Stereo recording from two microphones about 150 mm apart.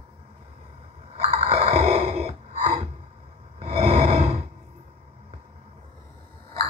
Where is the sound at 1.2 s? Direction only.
45° right (ahead or behind).